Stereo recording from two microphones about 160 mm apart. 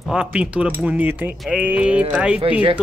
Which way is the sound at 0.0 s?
5° right (ahead or behind).